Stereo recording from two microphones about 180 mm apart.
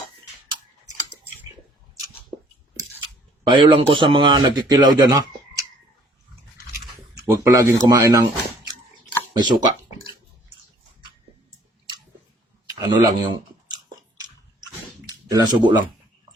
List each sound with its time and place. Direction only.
3.4 s a man's voice: 25° right (ahead or behind)
7.3 s speech: 15° right (ahead or behind)
9.4 s a man's voice: 25° right (ahead or behind)
12.7 s a sound: 25° right (ahead or behind)
15.3 s a man's voice: 20° right (ahead or behind)